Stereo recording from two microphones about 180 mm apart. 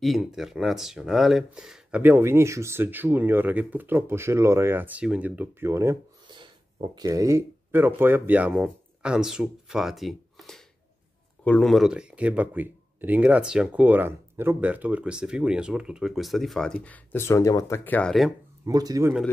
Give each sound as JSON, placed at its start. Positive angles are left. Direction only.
{"t": 0.0, "sound": "speech", "side_deg": 0}
{"t": 18.7, "sound": "speech", "side_deg": -20}